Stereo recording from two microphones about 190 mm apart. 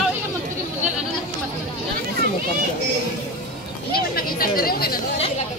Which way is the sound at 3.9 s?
50° left (ahead or behind).